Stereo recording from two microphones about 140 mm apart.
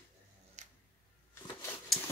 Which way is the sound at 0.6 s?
55° right (ahead or behind).